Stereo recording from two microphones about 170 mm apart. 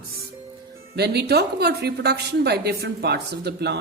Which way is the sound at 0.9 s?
75° right (ahead or behind).